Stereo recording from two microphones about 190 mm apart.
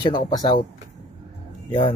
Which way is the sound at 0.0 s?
25° left (ahead or behind).